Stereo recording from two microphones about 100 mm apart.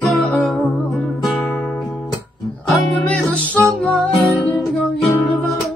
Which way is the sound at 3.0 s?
10° left (ahead or behind).